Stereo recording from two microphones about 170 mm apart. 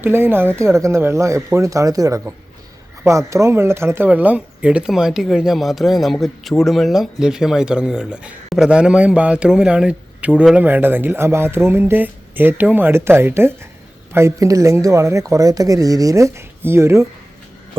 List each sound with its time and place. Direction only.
0.0 s speech: 15° right (ahead or behind)